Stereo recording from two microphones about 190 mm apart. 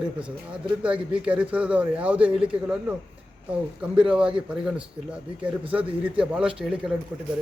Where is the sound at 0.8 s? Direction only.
5° right (ahead or behind).